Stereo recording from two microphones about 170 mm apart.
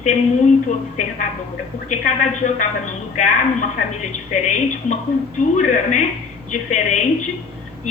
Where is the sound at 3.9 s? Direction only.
45° left (ahead or behind).